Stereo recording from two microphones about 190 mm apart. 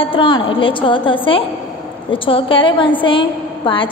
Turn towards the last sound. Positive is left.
turn(degrees=25)  # may be behind; listen again after turning